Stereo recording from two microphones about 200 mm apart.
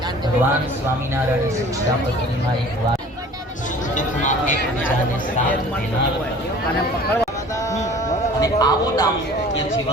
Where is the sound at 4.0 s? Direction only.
40° left (ahead or behind).